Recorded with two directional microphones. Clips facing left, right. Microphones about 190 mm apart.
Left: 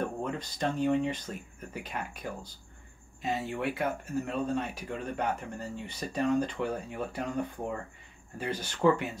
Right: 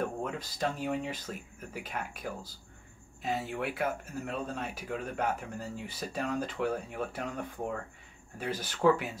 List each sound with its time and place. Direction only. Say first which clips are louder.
0.0 s speech: left 1 dB; 5° right (ahead or behind)